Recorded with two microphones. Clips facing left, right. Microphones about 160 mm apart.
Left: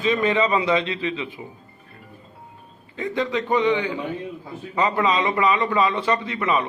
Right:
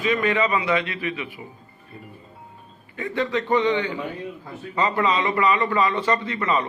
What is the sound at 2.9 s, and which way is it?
A man's voice, 15° left (ahead or behind).